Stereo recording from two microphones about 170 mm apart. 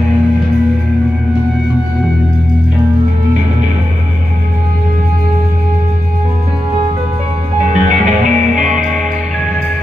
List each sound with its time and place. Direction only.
7.7 s music: 45° right (ahead or behind)